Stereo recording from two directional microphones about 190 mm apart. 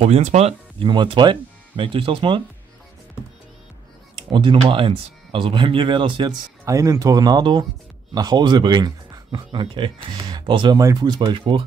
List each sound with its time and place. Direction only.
0.0 s speech: 35° right (ahead or behind)
4.3 s speech: 25° right (ahead or behind)